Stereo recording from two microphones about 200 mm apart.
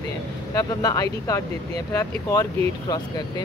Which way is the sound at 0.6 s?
15° left (ahead or behind).